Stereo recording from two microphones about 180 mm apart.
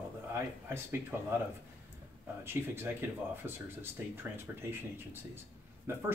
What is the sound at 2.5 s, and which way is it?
Speech, 10° right (ahead or behind).